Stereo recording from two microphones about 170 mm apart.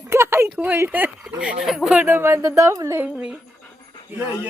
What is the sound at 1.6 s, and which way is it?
Speech, centre (ahead or behind).